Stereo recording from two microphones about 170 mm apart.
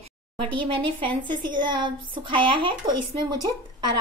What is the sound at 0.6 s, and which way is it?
Speech, 30° right (ahead or behind).